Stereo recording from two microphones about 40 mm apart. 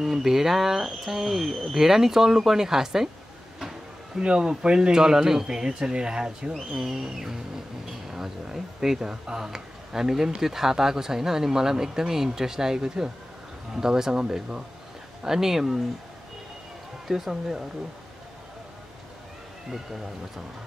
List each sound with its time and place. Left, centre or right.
0.0 s speech: centre
4.2 s speech: centre
6.5 s speech: centre
17.1 s speech: centre